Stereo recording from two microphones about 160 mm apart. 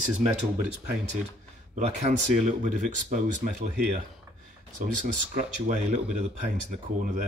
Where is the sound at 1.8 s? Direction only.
45° right (ahead or behind).